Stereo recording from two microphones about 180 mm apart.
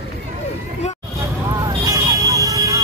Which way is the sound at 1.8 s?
20° right (ahead or behind).